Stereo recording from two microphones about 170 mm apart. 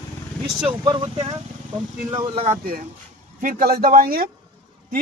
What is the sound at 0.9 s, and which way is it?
Speech, 25° right (ahead or behind).